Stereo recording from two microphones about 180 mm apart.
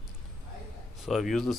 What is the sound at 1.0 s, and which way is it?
Speech, centre (ahead or behind).